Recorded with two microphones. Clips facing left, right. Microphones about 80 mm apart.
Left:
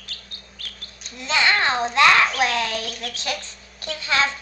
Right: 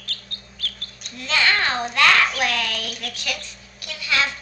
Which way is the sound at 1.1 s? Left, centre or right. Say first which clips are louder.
Left 1 dB; left.